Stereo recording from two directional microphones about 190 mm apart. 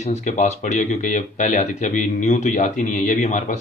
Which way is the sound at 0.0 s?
35° left (ahead or behind).